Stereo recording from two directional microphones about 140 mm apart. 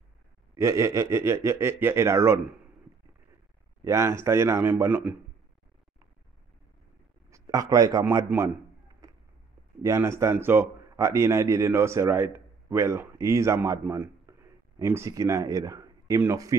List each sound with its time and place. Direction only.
0.6 s a man's voice: 20° right (ahead or behind)
3.8 s a man's voice: 20° right (ahead or behind)
7.2 s a sound: 25° right (ahead or behind)
8.0 s a man's voice: 20° right (ahead or behind)
9.8 s a man's voice: 20° right (ahead or behind)